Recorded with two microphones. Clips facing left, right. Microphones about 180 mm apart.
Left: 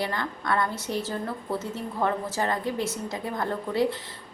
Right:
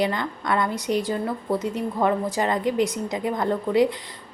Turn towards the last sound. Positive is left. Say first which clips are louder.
# right 5 dB
turn(degrees=-15)  # may be behind; listen again after turning